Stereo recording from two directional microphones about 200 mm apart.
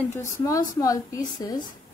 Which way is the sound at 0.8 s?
15° left (ahead or behind).